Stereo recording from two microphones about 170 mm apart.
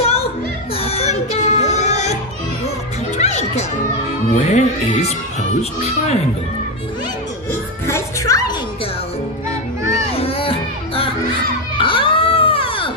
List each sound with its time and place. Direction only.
0.0 s music: 35° left (ahead or behind)
3.2 s music: 40° left (ahead or behind)
4.4 s speech: 40° left (ahead or behind)
7.8 s music: 20° left (ahead or behind)
10.1 s music: 35° left (ahead or behind)
11.8 s baby cry: 30° left (ahead or behind)